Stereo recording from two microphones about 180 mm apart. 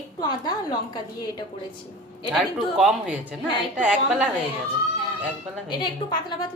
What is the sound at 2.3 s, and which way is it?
A woman's voice, centre (ahead or behind).